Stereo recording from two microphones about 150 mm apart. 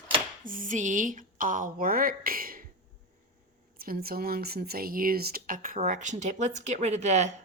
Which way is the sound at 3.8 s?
80° right.